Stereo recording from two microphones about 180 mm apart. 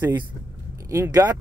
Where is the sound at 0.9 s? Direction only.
20° right (ahead or behind).